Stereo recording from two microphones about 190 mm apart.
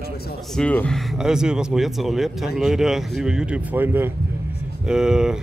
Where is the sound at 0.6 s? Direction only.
5° left (ahead or behind).